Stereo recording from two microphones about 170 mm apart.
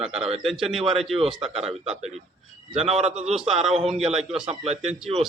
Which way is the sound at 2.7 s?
40° right (ahead or behind).